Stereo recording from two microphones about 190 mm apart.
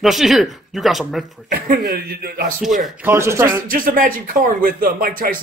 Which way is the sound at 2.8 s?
10° right (ahead or behind).